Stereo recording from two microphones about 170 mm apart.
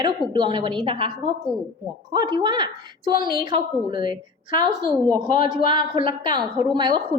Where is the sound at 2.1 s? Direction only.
25° right (ahead or behind).